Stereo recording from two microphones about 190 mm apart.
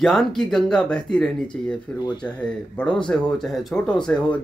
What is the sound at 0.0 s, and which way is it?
Speech, centre (ahead or behind).